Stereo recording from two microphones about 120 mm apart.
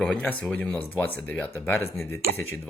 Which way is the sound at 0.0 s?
10° left (ahead or behind).